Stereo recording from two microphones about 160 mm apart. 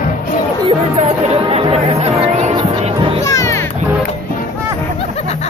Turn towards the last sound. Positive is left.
turn(degrees=20)  # may be behind; listen again after turning